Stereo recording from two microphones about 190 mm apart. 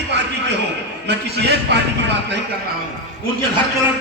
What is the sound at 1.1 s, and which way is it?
A man's voice, 60° right (ahead or behind).